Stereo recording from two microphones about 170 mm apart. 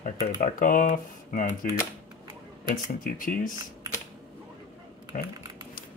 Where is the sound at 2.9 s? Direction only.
55° left (ahead or behind).